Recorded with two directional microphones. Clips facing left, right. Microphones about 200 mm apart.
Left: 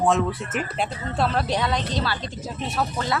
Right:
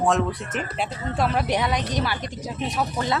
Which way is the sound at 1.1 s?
15° right (ahead or behind).